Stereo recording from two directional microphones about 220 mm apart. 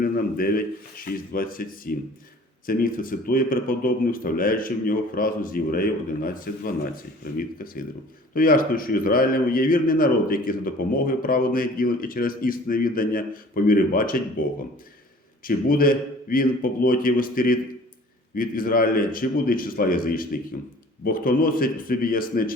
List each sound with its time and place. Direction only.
0.0 s a man's voice: 40° left (ahead or behind)
15.4 s a man's voice: 40° left (ahead or behind)